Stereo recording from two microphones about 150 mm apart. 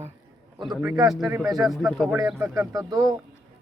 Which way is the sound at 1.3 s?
5° right (ahead or behind).